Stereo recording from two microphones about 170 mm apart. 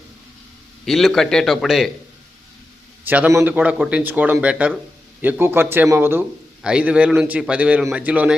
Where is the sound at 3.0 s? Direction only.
10° right (ahead or behind).